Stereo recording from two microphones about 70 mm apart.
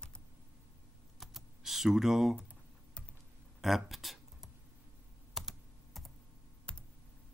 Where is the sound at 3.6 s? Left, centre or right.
Centre.